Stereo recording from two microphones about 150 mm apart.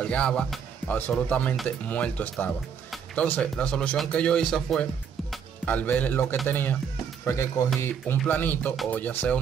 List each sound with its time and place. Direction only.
0.0 s speech: 5° left (ahead or behind)
8.2 s speech: 10° left (ahead or behind)